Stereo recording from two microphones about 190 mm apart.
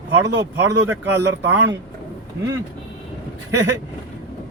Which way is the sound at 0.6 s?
15° right (ahead or behind).